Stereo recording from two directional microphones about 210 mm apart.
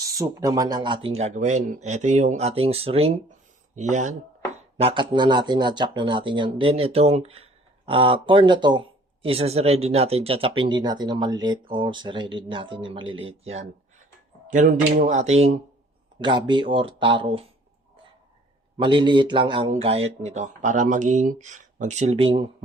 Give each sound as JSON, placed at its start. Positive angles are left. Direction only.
{"t": 0.0, "sound": "speech", "side_deg": -15}
{"t": 18.8, "sound": "speech", "side_deg": -25}